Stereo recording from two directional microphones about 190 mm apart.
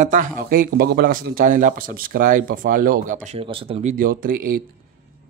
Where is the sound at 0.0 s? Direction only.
45° right (ahead or behind).